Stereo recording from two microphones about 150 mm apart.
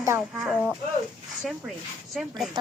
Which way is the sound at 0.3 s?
Centre (ahead or behind).